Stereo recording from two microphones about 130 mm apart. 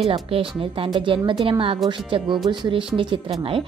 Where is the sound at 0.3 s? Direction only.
45° right (ahead or behind).